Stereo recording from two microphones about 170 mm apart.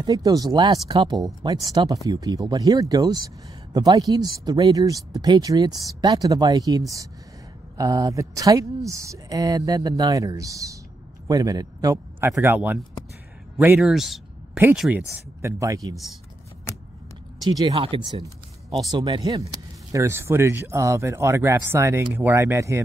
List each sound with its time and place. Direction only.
0.0 s speech: 20° right (ahead or behind)
13.7 s speech: centre (ahead or behind); by 16.0 s 20° right (ahead or behind)
17.5 s speech: 25° right (ahead or behind)